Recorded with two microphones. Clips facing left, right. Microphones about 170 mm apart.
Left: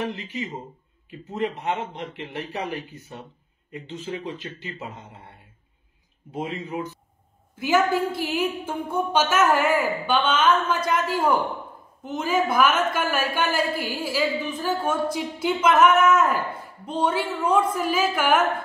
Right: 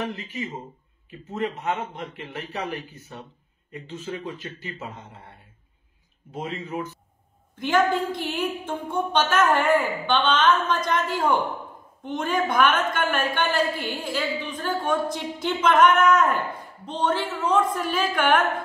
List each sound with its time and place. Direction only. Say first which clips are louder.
0.1 s a woman's voice: left 1 dB; 20° left (ahead or behind)
2.1 s a woman's voice: left 2 dB; 20° left (ahead or behind)
3.9 s a woman's voice: left 1 dB; 20° left (ahead or behind)
6.3 s a woman's voice: left 1 dB; 15° left (ahead or behind)